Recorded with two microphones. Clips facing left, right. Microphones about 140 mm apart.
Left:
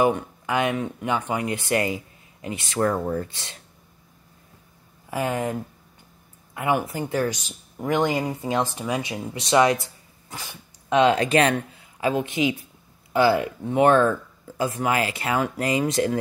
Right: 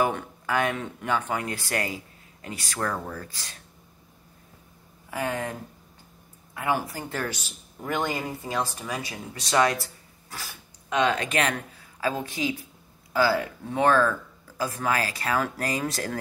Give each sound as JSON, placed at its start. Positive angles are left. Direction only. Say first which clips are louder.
{"t": 0.0, "sound": "speech", "louder": "left 5 dB", "side_deg": 20}
{"t": 5.1, "sound": "speech", "louder": "left 4 dB", "side_deg": 20}
{"t": 10.9, "sound": "speech", "louder": "left 6 dB", "side_deg": 30}
{"t": 12.0, "sound": "speech", "louder": "left 5 dB", "side_deg": 20}